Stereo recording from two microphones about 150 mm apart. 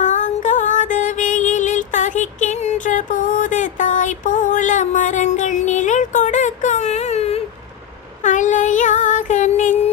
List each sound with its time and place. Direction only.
0.0 s music: 55° left (ahead or behind)
8.2 s child singing: 55° left (ahead or behind)